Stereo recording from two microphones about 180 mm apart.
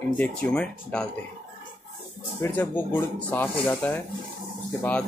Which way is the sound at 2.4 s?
10° left (ahead or behind).